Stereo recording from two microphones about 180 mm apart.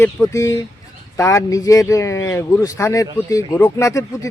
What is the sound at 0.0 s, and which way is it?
Speech, 15° left (ahead or behind).